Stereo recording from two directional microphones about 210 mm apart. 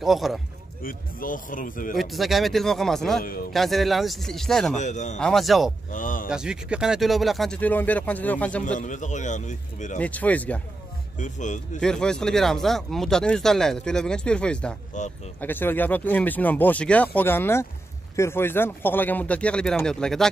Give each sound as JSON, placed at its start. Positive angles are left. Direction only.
{"t": 0.0, "sound": "speech", "side_deg": 0}
{"t": 0.8, "sound": "a man's voice", "side_deg": 40}
{"t": 2.0, "sound": "speech", "side_deg": 0}
{"t": 4.7, "sound": "a man's voice", "side_deg": 35}
{"t": 5.2, "sound": "speech", "side_deg": 0}
{"t": 5.9, "sound": "speech", "side_deg": 40}
{"t": 6.2, "sound": "speech", "side_deg": -5}
{"t": 8.7, "sound": "a man's voice", "side_deg": 35}
{"t": 9.9, "sound": "speech", "side_deg": 5}
{"t": 11.1, "sound": "a man's voice", "side_deg": 35}
{"t": 11.8, "sound": "speech", "side_deg": 5}